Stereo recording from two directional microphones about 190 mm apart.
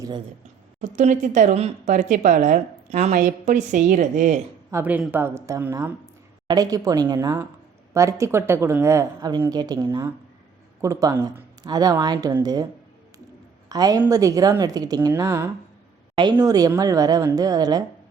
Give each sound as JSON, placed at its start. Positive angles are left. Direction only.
{"t": 0.8, "sound": "speech", "side_deg": -40}
{"t": 4.7, "sound": "a woman's voice", "side_deg": -10}
{"t": 13.7, "sound": "a woman's voice", "side_deg": -20}